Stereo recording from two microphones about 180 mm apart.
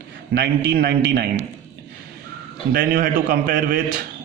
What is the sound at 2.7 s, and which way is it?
A man's voice, 55° right (ahead or behind).